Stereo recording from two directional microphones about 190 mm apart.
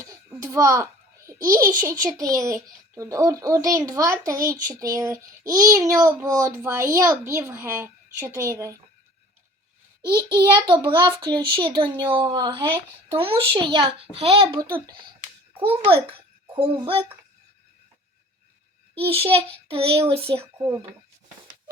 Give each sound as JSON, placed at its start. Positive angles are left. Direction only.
{"t": 0.0, "sound": "a sound", "side_deg": -15}
{"t": 1.5, "sound": "a child's voice", "side_deg": -15}
{"t": 10.0, "sound": "a child's voice", "side_deg": -25}
{"t": 16.6, "sound": "a child's voice", "side_deg": -30}
{"t": 18.9, "sound": "speech", "side_deg": -30}
{"t": 20.4, "sound": "speech", "side_deg": -15}